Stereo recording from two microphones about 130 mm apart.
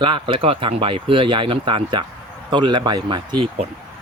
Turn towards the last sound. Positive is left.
turn(degrees=-35)  # may be behind; listen again after turning